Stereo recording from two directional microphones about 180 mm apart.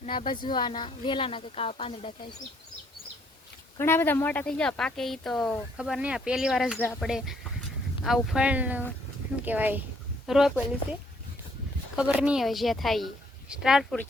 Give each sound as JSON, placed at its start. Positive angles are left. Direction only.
{"t": 0.0, "sound": "speech", "side_deg": 40}
{"t": 0.5, "sound": "a woman's voice", "side_deg": 25}
{"t": 3.8, "sound": "speech", "side_deg": 15}
{"t": 6.7, "sound": "speech", "side_deg": 10}
{"t": 8.0, "sound": "speech", "side_deg": 0}
{"t": 11.9, "sound": "speech", "side_deg": -5}